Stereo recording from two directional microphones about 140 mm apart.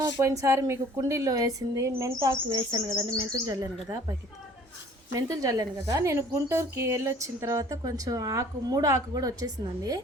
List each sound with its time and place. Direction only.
0.2 s a woman's voice: 20° right (ahead or behind)
2.5 s a woman's voice: 35° right (ahead or behind)
5.1 s a woman's voice: 25° right (ahead or behind)